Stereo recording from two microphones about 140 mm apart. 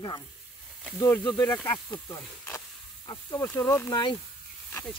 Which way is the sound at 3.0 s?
30° left (ahead or behind).